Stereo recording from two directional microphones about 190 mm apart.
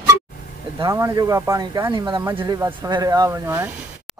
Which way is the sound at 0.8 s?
15° right (ahead or behind).